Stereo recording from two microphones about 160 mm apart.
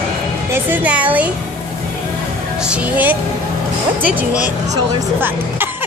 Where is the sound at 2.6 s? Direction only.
10° right (ahead or behind).